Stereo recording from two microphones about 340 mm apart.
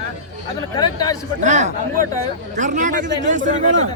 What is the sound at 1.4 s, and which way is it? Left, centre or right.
Speech, right.